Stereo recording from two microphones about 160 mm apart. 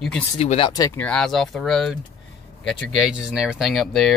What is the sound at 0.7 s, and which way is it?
Speech, 25° left (ahead or behind).